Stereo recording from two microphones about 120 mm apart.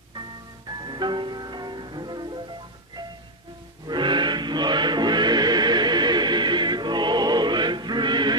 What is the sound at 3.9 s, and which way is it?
Chant, 40° right (ahead or behind).